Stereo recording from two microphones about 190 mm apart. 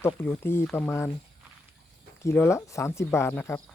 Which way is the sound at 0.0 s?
10° left (ahead or behind).